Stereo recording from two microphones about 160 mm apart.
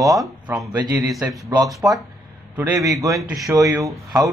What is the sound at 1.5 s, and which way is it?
Speech, 25° right (ahead or behind).